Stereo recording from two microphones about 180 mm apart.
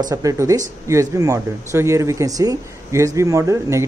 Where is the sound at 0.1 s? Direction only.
20° right (ahead or behind).